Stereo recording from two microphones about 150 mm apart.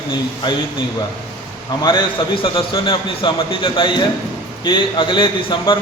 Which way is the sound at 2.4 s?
35° left (ahead or behind).